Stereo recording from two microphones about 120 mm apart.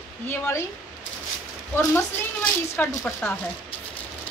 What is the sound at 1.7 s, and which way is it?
A woman's voice, 20° left (ahead or behind).